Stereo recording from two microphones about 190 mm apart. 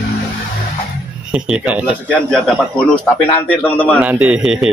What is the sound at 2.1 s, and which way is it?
A man's voice, 5° left (ahead or behind).